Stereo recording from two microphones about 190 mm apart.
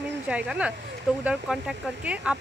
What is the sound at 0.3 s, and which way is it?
Speech, 5° right (ahead or behind).